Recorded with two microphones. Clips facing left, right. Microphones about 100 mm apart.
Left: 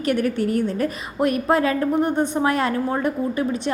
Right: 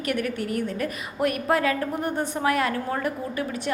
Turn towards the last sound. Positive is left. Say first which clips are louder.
# left 6 dB
turn(degrees=25)  # may be behind; listen again after turning